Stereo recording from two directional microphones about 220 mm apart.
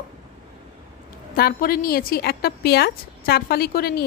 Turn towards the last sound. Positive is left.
turn(degrees=45)  # may be behind; listen again after turning